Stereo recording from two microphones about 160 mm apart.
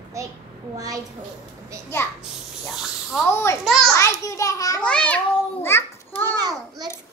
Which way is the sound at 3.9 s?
20° left (ahead or behind).